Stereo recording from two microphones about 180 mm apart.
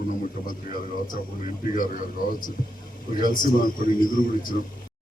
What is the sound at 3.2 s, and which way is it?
Speech, 50° left (ahead or behind).